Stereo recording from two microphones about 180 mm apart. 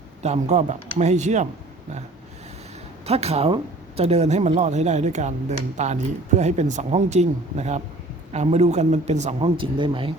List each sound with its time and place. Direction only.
0.2 s speech: 40° right (ahead or behind)
3.1 s speech: 35° right (ahead or behind)
9.6 s speech: 30° right (ahead or behind)